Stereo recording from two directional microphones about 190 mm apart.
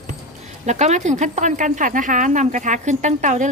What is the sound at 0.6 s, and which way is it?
A woman's voice, 35° right (ahead or behind).